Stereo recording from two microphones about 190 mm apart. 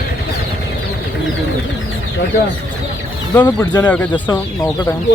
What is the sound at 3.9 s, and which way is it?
Speech, 10° left (ahead or behind).